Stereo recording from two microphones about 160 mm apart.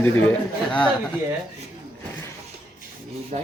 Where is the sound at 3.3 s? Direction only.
50° right (ahead or behind).